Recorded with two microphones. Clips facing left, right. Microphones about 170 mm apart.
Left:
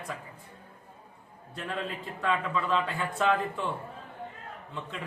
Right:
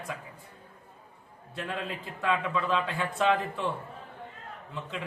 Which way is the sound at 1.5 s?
Centre (ahead or behind).